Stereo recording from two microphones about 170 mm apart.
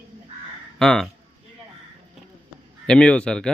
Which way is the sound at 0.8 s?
5° left (ahead or behind).